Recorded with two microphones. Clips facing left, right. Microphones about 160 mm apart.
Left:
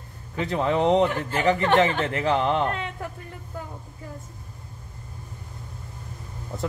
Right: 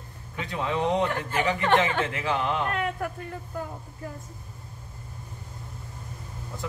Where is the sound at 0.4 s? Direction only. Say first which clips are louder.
Left 5 dB; 40° left (ahead or behind); by 3.1 s 25° left (ahead or behind).